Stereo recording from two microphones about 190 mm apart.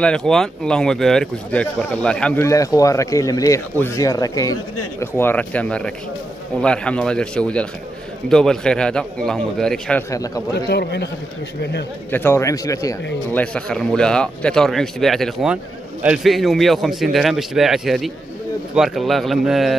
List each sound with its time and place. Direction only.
0.0 s a man's voice: 5° left (ahead or behind)
10.1 s speech: 20° left (ahead or behind)
10.5 s a man's voice: 60° left (ahead or behind)
12.1 s a man's voice: 10° left (ahead or behind)